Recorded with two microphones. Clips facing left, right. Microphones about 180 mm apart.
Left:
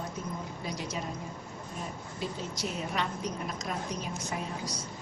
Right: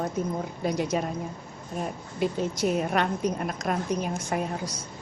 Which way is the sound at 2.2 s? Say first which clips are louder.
Right 10 dB; 55° right (ahead or behind).